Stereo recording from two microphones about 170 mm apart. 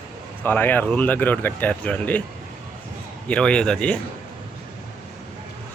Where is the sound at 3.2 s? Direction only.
5° left (ahead or behind).